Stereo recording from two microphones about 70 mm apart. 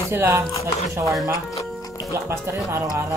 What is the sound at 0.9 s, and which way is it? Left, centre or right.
Speech, right.